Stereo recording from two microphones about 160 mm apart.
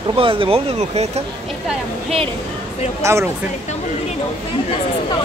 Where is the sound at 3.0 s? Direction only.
20° right (ahead or behind).